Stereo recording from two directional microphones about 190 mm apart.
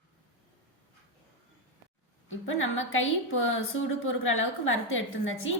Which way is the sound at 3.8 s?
90° left.